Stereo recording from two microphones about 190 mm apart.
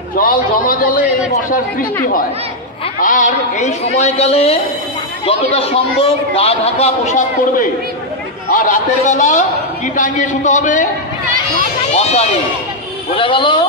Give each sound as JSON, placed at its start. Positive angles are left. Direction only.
{"t": 0.2, "sound": "a man's voice", "side_deg": 50}
{"t": 3.0, "sound": "a man's voice", "side_deg": 45}
{"t": 11.9, "sound": "a man's voice", "side_deg": 35}